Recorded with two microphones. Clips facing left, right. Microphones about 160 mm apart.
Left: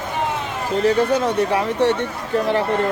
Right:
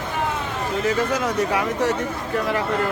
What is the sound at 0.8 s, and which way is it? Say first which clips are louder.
Speech: left 6 dB; 30° left (ahead or behind).